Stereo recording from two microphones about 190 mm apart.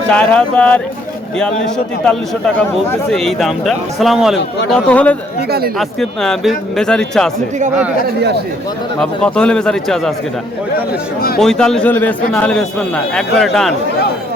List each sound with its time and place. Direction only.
0.1 s a man's voice: 5° left (ahead or behind)
5.5 s speech: 55° right (ahead or behind)
6.0 s a man's voice: centre (ahead or behind)
9.0 s a man's voice: 5° left (ahead or behind)
11.3 s a man's voice: 5° left (ahead or behind)